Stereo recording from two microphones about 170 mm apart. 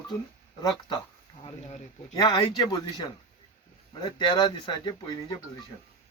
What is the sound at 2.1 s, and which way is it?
A man's voice, 25° left (ahead or behind).